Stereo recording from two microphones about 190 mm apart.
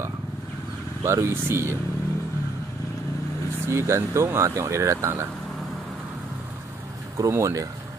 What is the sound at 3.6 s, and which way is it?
Speech, 15° right (ahead or behind).